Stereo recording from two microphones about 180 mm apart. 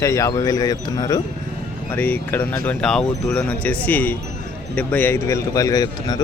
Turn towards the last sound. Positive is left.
turn(degrees=20)  # may be behind; listen again after turning